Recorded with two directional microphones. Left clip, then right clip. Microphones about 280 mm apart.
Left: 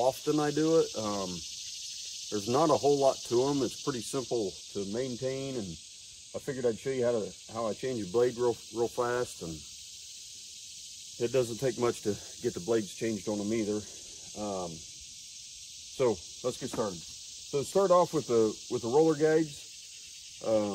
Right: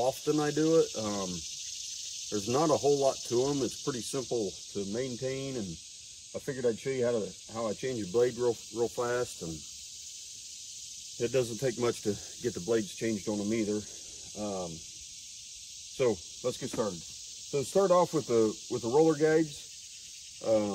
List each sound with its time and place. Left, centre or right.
0.0 s cricket: centre
4.3 s cricket: centre
11.1 s cricket: centre
14.3 s a sound: centre
16.0 s cricket: centre
20.4 s cricket: centre